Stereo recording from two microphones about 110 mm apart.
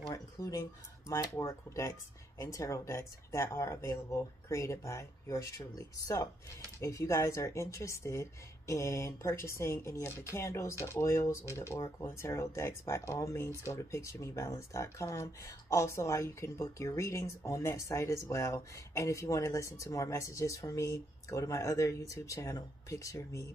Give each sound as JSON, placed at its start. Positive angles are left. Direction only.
{"t": 0.1, "sound": "speech", "side_deg": 30}